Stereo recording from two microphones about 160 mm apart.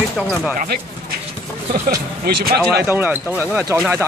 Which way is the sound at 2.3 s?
70° right (ahead or behind).